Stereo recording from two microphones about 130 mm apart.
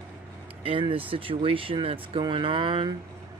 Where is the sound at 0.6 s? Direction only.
45° right (ahead or behind).